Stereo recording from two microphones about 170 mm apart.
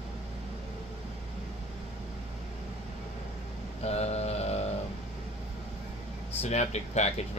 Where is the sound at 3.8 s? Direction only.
40° left (ahead or behind).